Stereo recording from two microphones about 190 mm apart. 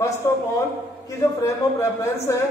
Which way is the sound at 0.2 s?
15° left (ahead or behind).